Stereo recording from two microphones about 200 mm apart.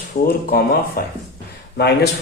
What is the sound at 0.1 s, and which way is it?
Speech, 50° left (ahead or behind).